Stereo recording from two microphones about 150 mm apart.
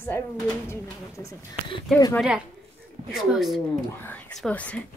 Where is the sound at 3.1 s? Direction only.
Centre (ahead or behind).